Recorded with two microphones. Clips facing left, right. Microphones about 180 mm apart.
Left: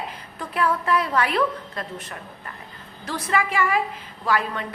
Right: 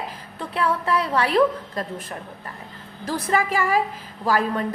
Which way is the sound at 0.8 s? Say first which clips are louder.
Even; 30° right (ahead or behind).